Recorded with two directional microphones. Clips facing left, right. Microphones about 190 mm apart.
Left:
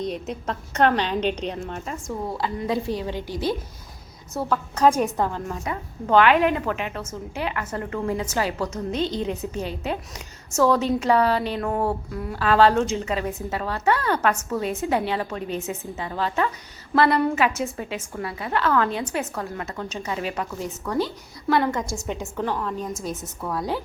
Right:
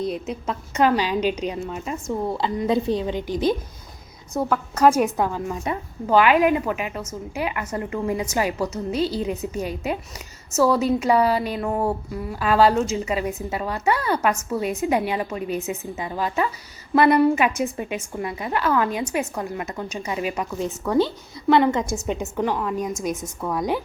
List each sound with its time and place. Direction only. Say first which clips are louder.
0.4 s a woman's voice: right 1 dB; 5° right (ahead or behind)